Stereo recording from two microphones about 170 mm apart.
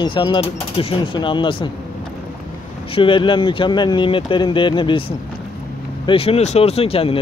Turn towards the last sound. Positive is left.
turn(degrees=35)  # may be behind; listen again after turning